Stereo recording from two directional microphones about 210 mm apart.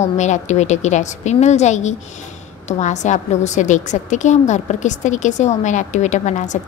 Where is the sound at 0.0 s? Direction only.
35° left (ahead or behind).